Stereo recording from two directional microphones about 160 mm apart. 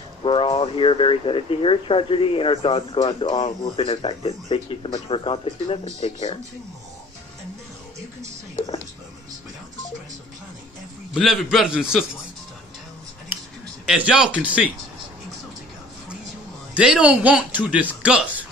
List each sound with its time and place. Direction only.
0.2 s speech: 35° left (ahead or behind)
8.5 s music: 20° left (ahead or behind)
11.1 s a man's voice: centre (ahead or behind)
13.8 s speech: 5° right (ahead or behind)
16.7 s speech: 5° right (ahead or behind)